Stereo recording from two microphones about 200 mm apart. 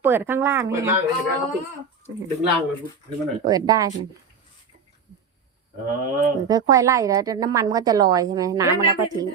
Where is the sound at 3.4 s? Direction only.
20° right (ahead or behind).